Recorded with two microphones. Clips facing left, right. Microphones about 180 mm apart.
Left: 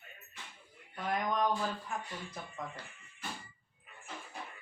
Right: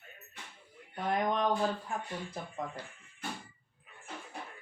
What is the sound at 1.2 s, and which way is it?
Speech, 30° right (ahead or behind).